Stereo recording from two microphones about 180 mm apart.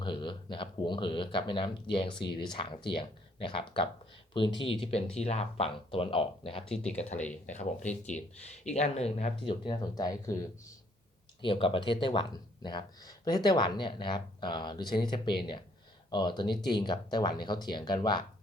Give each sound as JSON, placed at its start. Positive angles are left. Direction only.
{"t": 0.0, "sound": "speech", "side_deg": 25}
{"t": 7.2, "sound": "speech", "side_deg": 10}
{"t": 8.5, "sound": "speech", "side_deg": 40}
{"t": 11.4, "sound": "speech", "side_deg": 30}